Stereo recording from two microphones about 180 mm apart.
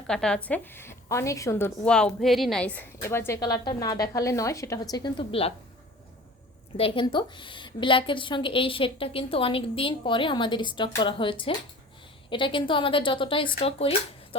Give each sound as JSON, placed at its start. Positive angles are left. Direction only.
{"t": 0.1, "sound": "a woman's voice", "side_deg": 5}
{"t": 6.7, "sound": "a woman's voice", "side_deg": 30}